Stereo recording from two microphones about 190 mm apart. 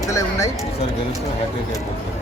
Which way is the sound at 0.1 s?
15° left (ahead or behind).